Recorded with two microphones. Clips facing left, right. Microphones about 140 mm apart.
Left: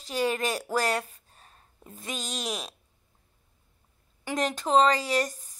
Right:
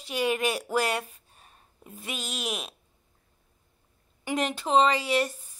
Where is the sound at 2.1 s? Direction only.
35° left (ahead or behind).